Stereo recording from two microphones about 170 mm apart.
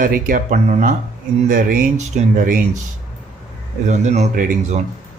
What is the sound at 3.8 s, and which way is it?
Speech, 45° right (ahead or behind).